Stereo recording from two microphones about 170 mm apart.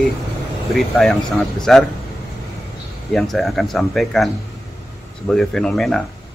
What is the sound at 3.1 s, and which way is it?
Speech, centre (ahead or behind).